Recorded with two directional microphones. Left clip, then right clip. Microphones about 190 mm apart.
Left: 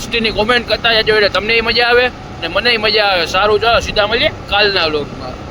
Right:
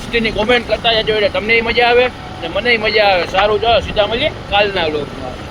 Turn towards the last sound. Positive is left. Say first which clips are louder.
# left 2 dB
turn(degrees=30)  # may be behind; listen again after turning